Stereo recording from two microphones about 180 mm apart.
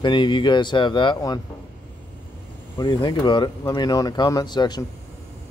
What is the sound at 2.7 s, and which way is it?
Speech, 25° left (ahead or behind).